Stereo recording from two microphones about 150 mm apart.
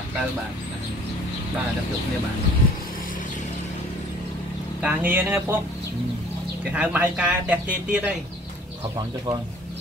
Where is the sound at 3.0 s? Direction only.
60° left (ahead or behind).